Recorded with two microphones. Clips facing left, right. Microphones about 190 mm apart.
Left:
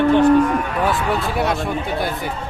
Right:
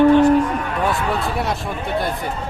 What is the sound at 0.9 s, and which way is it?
Speech, centre (ahead or behind).